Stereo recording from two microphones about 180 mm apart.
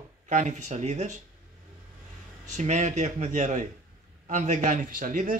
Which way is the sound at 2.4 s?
45° right (ahead or behind).